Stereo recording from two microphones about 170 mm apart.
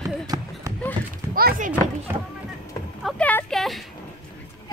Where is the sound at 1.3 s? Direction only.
55° right (ahead or behind).